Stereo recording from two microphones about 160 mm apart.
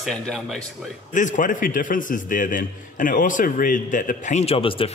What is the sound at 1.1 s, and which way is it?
A man's voice, 50° left (ahead or behind).